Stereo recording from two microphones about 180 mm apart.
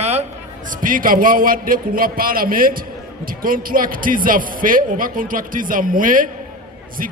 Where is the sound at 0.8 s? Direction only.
50° right (ahead or behind).